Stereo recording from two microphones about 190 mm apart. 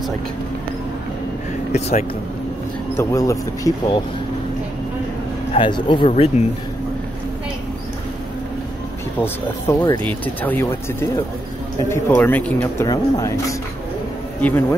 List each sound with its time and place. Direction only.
3.0 s speech: 15° left (ahead or behind)
5.5 s speech: 25° left (ahead or behind)
9.2 s speech: 10° left (ahead or behind)